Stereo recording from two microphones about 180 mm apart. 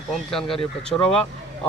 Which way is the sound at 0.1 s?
5° left (ahead or behind).